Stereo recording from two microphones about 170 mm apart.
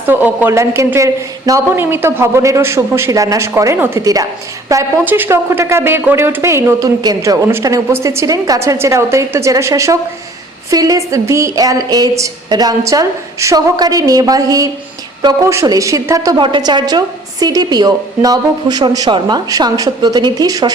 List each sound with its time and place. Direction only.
0.1 s a woman's voice: 10° right (ahead or behind)